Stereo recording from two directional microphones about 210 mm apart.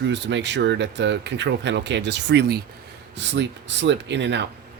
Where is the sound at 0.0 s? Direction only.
55° right (ahead or behind).